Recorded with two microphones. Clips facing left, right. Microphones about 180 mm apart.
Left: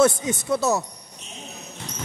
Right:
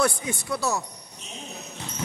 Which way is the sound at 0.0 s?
20° left (ahead or behind).